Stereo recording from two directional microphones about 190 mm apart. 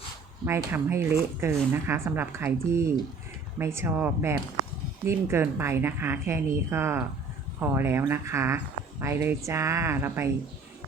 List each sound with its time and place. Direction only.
0.4 s speech: 10° right (ahead or behind)